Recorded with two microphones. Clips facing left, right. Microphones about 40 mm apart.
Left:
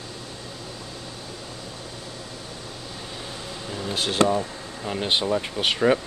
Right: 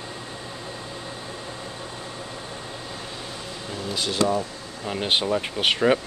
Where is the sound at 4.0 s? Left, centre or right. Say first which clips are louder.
Left 3 dB; left.